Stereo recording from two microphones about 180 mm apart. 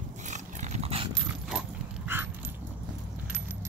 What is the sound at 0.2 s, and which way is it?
Dog, 40° right (ahead or behind).